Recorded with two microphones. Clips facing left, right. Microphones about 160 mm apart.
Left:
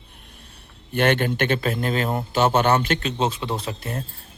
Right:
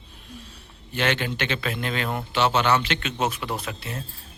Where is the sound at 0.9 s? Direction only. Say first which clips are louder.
Left 5 dB; 50° left (ahead or behind).